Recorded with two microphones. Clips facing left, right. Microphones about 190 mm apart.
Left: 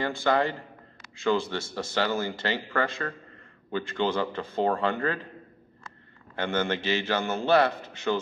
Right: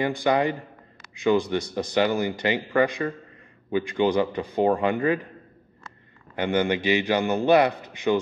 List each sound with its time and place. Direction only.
0.0 s speech: 15° right (ahead or behind)
6.3 s speech: 15° right (ahead or behind)